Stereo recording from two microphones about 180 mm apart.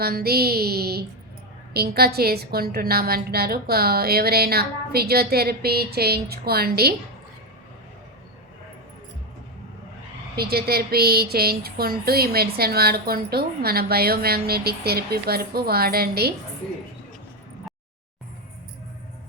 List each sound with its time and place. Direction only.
0.0 s speech: 60° right (ahead or behind)
10.3 s speech: 60° right (ahead or behind)